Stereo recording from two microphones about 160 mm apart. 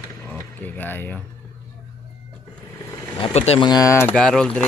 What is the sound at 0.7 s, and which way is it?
Speech, 10° left (ahead or behind).